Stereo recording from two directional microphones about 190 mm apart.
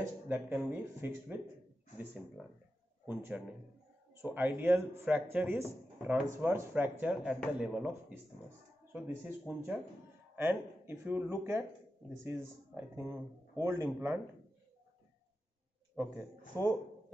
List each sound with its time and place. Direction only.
0.0 s speech: 10° right (ahead or behind)
3.1 s a man's voice: 10° right (ahead or behind)
16.5 s speech: 15° right (ahead or behind)